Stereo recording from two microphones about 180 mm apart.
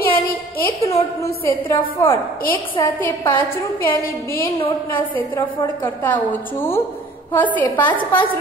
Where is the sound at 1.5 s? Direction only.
25° left (ahead or behind).